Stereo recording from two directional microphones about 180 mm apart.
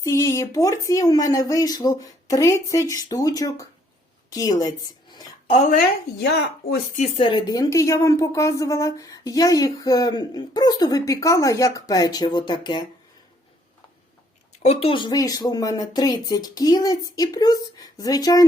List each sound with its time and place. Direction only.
0.0 s a woman's voice: 15° left (ahead or behind)
5.5 s speech: 45° left (ahead or behind)
6.1 s speech: 65° left (ahead or behind)
6.9 s speech: 40° left (ahead or behind)
7.3 s speech: 25° left (ahead or behind)
14.5 s speech: 40° left (ahead or behind); by 18.4 s 20° left (ahead or behind)